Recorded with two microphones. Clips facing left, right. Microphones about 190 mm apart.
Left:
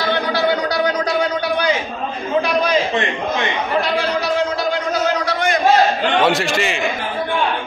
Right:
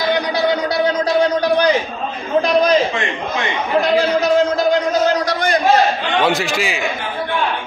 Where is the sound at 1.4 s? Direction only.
35° right (ahead or behind).